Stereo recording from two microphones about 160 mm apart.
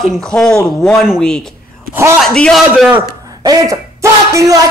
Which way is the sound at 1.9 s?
15° right (ahead or behind).